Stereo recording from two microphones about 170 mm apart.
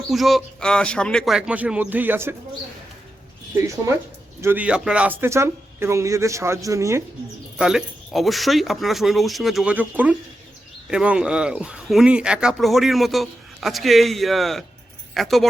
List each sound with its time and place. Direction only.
0.1 s speech: centre (ahead or behind)
3.5 s speech: 15° right (ahead or behind)
7.6 s speech: 5° right (ahead or behind)